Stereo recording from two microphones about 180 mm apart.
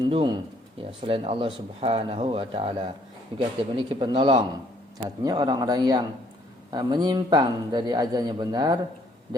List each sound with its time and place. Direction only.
0.0 s a man's voice: 25° right (ahead or behind)